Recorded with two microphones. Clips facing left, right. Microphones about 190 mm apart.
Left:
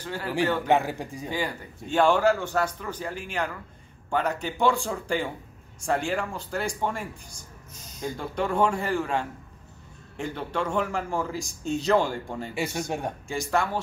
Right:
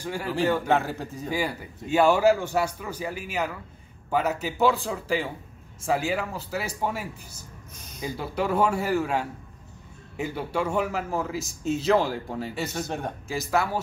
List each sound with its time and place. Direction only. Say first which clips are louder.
0.0 s speech: right 2 dB; 10° right (ahead or behind)
0.7 s a man's voice: left 1 dB; 15° left (ahead or behind)
1.3 s speech: right 3 dB; 10° right (ahead or behind)
7.7 s a sound: right 1 dB; 60° right (ahead or behind)
8.0 s speech: right 1 dB; 5° right (ahead or behind)
12.5 s a man's voice: left 4 dB; 15° left (ahead or behind)
13.3 s speech: right 1 dB; 5° right (ahead or behind)